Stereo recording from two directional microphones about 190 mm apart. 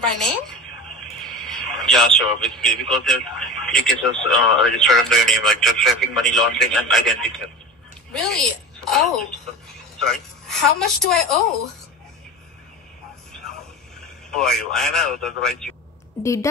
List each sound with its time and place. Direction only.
0.0 s a man's voice: 5° left (ahead or behind)
14.3 s a man's voice: 5° left (ahead or behind)
16.2 s a woman's voice: 15° left (ahead or behind)